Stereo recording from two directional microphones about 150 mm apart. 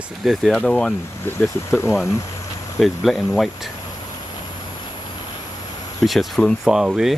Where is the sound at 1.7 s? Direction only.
15° left (ahead or behind).